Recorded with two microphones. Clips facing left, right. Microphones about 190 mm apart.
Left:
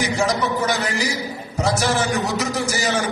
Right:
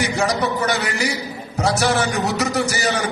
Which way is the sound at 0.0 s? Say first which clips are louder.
Right 1 dB; 65° right (ahead or behind).